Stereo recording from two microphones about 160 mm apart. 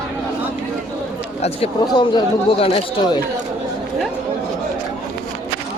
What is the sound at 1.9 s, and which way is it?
Speech, 25° left (ahead or behind).